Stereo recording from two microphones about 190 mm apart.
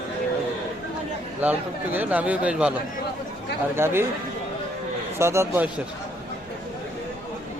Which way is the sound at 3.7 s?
15° right (ahead or behind).